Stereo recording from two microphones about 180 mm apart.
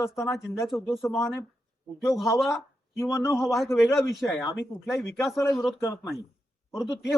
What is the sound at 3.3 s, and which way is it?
Speech, centre (ahead or behind).